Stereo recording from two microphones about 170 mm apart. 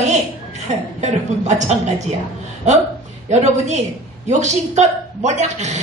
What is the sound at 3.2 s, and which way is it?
A woman's voice, 40° right (ahead or behind).